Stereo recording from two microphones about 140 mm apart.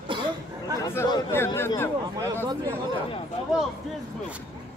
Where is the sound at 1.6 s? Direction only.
15° left (ahead or behind).